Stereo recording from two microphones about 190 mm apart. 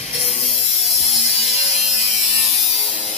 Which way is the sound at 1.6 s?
35° left (ahead or behind).